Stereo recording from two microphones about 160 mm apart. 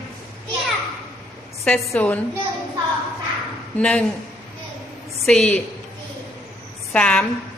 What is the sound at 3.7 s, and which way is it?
Speech, 5° left (ahead or behind).